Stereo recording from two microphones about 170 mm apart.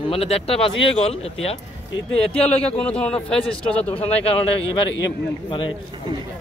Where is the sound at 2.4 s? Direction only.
5° left (ahead or behind).